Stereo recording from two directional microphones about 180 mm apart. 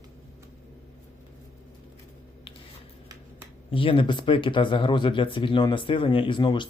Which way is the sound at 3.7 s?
30° left (ahead or behind).